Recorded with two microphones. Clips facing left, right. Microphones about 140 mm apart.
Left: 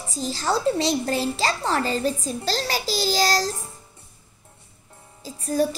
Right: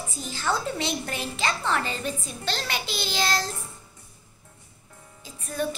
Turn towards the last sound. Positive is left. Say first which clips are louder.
# left 7 dB
turn(degrees=35)  # may be behind; listen again after turning